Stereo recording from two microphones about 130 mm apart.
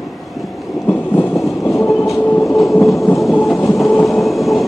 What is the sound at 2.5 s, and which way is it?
Train, centre (ahead or behind).